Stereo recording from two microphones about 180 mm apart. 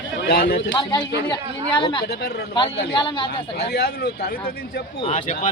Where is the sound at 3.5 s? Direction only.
65° left (ahead or behind).